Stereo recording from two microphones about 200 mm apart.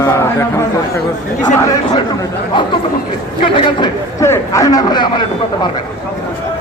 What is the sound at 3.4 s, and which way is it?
Speech, 25° left (ahead or behind).